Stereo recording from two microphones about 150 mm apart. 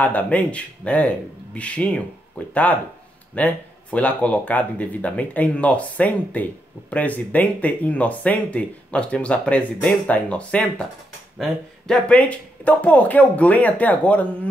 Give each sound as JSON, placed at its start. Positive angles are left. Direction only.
{"t": 0.0, "sound": "speech", "side_deg": 10}
{"t": 11.9, "sound": "speech", "side_deg": 10}